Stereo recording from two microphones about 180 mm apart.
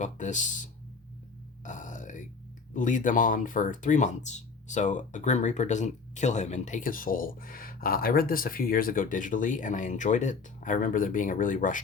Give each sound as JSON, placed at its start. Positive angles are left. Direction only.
{"t": 0.0, "sound": "speech", "side_deg": 45}
{"t": 1.6, "sound": "burping", "side_deg": 45}
{"t": 2.7, "sound": "speech", "side_deg": 45}